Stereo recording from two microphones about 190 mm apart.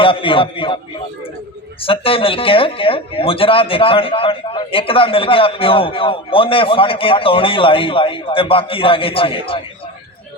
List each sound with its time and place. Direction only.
0.0 s speech: 25° left (ahead or behind)
1.8 s speech: 30° left (ahead or behind)